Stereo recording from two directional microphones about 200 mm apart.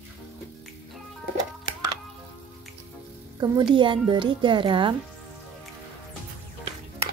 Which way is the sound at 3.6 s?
25° right (ahead or behind).